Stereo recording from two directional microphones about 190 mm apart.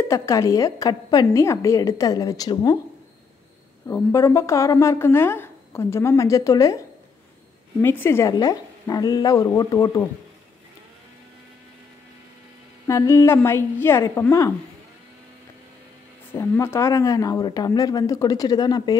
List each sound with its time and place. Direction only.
0.1 s speech: 15° left (ahead or behind)
3.8 s speech: 15° left (ahead or behind)
7.8 s speech: 10° left (ahead or behind)
12.8 s speech: 15° left (ahead or behind)
16.3 s speech: 15° left (ahead or behind)